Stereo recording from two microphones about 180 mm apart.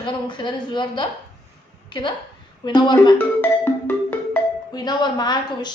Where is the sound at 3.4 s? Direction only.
10° left (ahead or behind).